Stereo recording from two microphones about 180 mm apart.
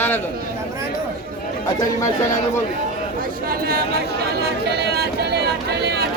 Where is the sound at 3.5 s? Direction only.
55° right (ahead or behind).